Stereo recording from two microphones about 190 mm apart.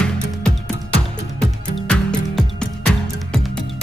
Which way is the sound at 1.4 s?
5° left (ahead or behind).